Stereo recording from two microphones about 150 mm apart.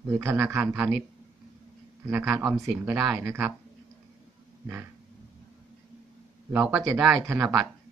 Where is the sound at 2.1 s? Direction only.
15° right (ahead or behind).